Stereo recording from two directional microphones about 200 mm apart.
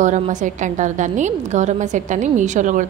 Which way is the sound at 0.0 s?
40° right (ahead or behind).